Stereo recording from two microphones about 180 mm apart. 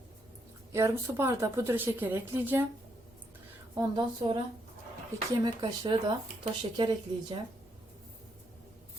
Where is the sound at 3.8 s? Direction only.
25° right (ahead or behind).